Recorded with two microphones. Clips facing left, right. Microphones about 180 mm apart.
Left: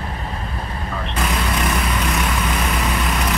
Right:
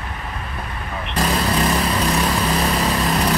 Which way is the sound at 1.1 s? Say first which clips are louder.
Right 4 dB; 35° right (ahead or behind).